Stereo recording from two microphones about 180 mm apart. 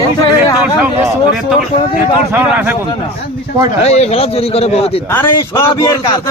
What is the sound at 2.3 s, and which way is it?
Speech, 10° right (ahead or behind).